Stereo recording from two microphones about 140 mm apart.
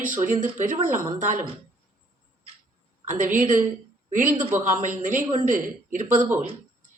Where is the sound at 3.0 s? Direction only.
65° right (ahead or behind).